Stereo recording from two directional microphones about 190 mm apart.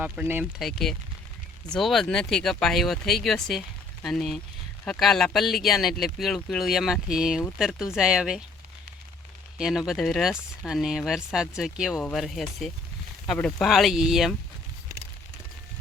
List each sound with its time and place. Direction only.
0.0 s speech: 10° right (ahead or behind)
1.6 s speech: centre (ahead or behind)
9.6 s speech: 5° right (ahead or behind)